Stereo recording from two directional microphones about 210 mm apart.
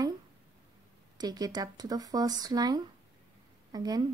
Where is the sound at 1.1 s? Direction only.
20° right (ahead or behind).